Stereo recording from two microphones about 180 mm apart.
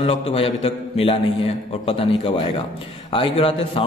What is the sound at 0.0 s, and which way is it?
A man's voice, 35° left (ahead or behind).